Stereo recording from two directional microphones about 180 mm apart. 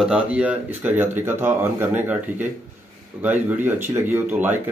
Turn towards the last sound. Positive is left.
turn(degrees=-10)  # may be behind; listen again after turning